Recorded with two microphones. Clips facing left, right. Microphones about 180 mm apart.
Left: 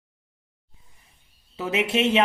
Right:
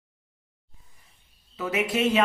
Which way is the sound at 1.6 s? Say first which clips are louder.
Left 2 dB; 25° left (ahead or behind).